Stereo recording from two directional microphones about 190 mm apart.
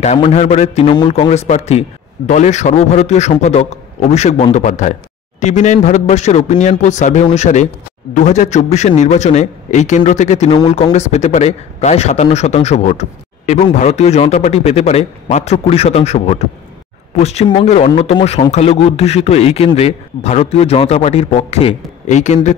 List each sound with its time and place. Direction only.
0.0 s a man's voice: 35° left (ahead or behind)